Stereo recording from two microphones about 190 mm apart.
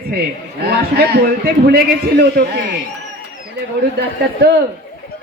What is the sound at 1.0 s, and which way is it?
Speech, 55° right (ahead or behind).